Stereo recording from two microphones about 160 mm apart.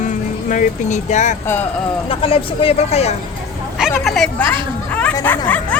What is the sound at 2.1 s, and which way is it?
Speech, 35° left (ahead or behind).